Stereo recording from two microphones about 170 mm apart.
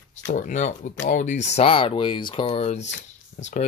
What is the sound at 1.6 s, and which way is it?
Speech, 30° left (ahead or behind).